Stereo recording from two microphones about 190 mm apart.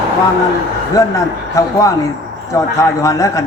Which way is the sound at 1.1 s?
15° left (ahead or behind).